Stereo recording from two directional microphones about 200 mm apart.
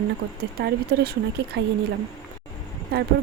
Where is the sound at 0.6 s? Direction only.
50° right (ahead or behind).